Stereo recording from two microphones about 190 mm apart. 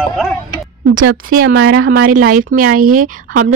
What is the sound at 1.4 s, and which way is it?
Speech, 55° right (ahead or behind).